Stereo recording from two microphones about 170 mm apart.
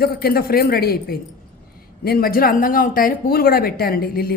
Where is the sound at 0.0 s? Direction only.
65° left (ahead or behind).